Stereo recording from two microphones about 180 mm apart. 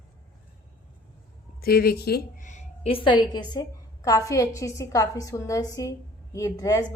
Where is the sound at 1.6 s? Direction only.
60° left (ahead or behind).